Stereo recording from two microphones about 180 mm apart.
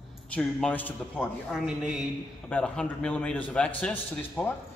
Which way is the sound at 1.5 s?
5° right (ahead or behind).